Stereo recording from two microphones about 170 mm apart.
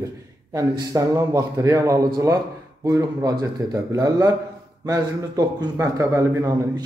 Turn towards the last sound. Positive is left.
turn(degrees=-20)  # may be behind; listen again after turning